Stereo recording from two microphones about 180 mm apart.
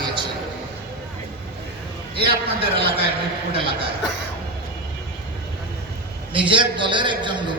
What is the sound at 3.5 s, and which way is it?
Speech, 30° right (ahead or behind).